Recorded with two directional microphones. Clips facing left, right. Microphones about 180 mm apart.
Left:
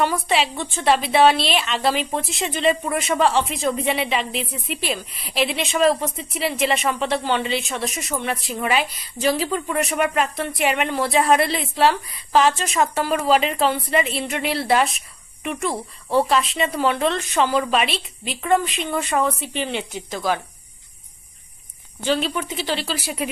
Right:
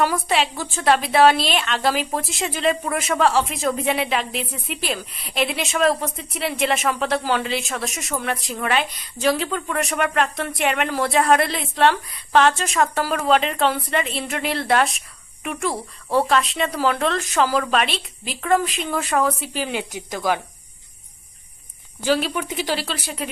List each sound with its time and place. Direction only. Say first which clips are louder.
0.0 s a woman's voice: even; centre (ahead or behind)
22.0 s speech: right 1 dB; 10° right (ahead or behind)
22.8 s a woman's voice: left 3 dB; 5° left (ahead or behind)